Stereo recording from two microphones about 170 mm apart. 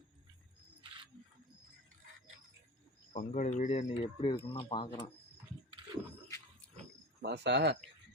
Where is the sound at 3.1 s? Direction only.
45° left (ahead or behind).